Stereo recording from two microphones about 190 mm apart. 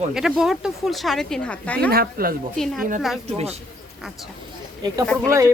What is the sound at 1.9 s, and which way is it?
Speech, 50° right (ahead or behind).